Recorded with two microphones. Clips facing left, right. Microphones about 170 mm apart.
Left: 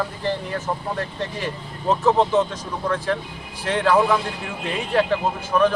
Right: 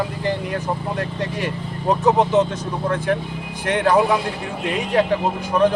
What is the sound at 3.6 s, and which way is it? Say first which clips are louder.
Speech: right 1 dB; 20° right (ahead or behind).